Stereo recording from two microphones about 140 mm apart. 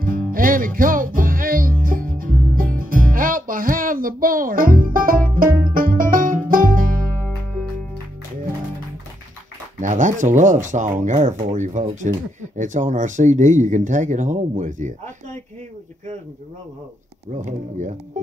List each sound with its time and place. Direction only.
0.3 s music: 85° right
7.1 s music: 5° left (ahead or behind)
9.8 s speech: 65° right (ahead or behind)
17.5 s speech: 60° right (ahead or behind)